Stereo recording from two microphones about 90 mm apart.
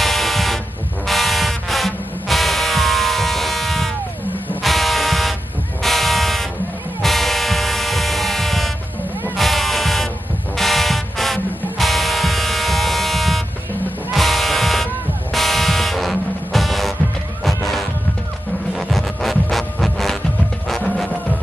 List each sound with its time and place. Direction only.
0.0 s vehicle: centre (ahead or behind)
1.0 s music: centre (ahead or behind)
5.8 s a sound: centre (ahead or behind)
7.0 s vehicle: centre (ahead or behind)
9.4 s music: centre (ahead or behind)
18.8 s music: centre (ahead or behind)